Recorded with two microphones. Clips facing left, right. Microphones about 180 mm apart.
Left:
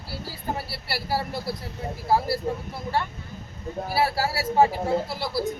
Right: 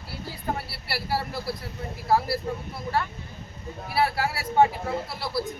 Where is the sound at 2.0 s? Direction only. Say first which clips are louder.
Even; 25° left (ahead or behind).